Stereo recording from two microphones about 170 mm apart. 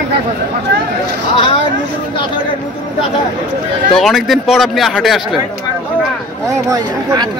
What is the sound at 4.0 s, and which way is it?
A man's voice, centre (ahead or behind).